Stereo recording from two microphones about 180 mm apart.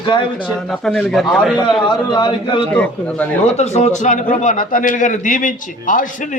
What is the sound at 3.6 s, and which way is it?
A man's voice, 40° left (ahead or behind).